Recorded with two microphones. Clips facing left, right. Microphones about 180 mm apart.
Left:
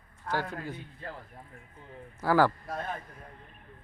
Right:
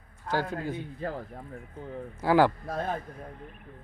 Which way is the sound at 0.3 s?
35° right (ahead or behind).